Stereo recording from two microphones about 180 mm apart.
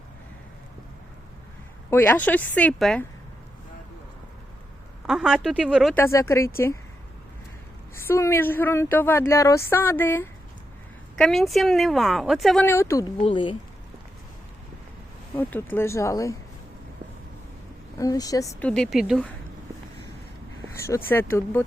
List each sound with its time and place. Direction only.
1.9 s speech: 10° left (ahead or behind)
5.0 s speech: 5° right (ahead or behind)
5.9 s speech: 15° left (ahead or behind)
7.9 s speech: 15° left (ahead or behind)
11.2 s speech: centre (ahead or behind)
12.6 s speech: 15° left (ahead or behind)
13.2 s speech: 25° left (ahead or behind)
15.4 s speech: 10° left (ahead or behind)
17.9 s speech: 20° left (ahead or behind)
18.6 s speech: 5° left (ahead or behind)
20.7 s speech: 15° left (ahead or behind)